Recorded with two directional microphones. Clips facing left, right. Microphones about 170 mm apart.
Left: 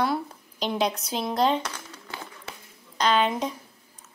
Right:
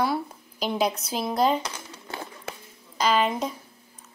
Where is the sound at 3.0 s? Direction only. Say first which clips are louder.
Even; 5° right (ahead or behind).